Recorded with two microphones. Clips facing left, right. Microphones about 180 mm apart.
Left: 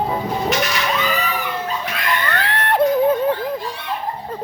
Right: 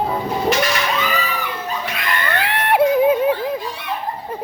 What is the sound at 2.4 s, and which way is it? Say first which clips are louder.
Yodeling: right 2 dB; 10° right (ahead or behind).